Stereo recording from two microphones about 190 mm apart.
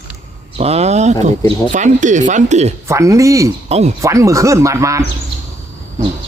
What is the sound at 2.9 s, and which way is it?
Speech, 15° right (ahead or behind).